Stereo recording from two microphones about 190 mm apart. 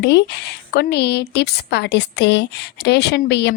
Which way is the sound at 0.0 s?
65° left (ahead or behind).